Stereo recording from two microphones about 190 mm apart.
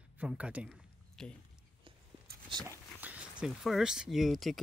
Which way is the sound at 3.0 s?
5° right (ahead or behind).